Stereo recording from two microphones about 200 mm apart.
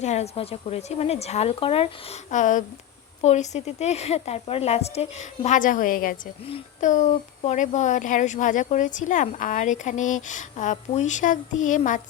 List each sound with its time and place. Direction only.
0.0 s speech: 35° left (ahead or behind)
6.4 s speech: 35° left (ahead or behind)